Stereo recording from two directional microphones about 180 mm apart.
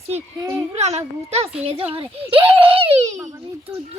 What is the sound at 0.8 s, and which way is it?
A child's voice, 35° right (ahead or behind).